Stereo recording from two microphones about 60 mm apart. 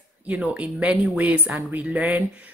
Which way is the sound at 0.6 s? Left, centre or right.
Right.